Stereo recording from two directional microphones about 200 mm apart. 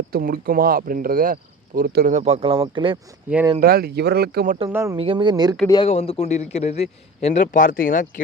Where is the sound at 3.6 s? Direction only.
50° right (ahead or behind).